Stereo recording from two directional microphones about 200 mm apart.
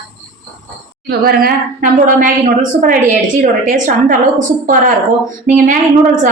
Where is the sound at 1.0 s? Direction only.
50° right (ahead or behind).